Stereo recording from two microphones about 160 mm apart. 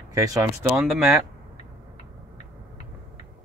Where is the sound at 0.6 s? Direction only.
5° right (ahead or behind).